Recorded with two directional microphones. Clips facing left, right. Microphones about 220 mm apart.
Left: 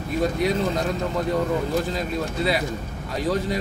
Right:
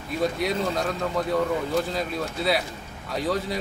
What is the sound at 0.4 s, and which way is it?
Speech, centre (ahead or behind).